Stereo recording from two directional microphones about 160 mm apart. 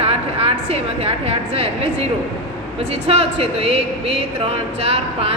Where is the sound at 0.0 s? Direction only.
40° right (ahead or behind).